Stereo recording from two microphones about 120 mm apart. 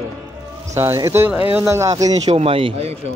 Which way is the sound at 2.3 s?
55° right (ahead or behind).